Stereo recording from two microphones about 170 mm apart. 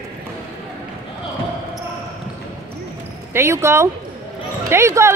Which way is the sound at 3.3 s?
15° right (ahead or behind).